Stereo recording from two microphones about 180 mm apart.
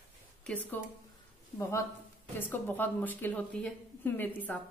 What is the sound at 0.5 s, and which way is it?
A woman's voice, 10° left (ahead or behind).